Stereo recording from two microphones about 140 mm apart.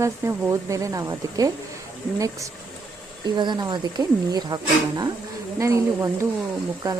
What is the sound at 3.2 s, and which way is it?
Speech, 30° right (ahead or behind).